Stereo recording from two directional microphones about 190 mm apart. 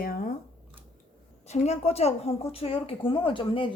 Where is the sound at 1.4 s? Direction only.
35° left (ahead or behind).